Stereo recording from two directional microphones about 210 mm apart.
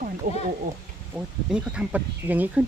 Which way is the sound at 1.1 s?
5° right (ahead or behind).